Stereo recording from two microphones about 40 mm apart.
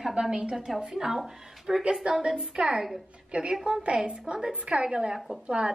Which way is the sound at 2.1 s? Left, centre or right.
Right.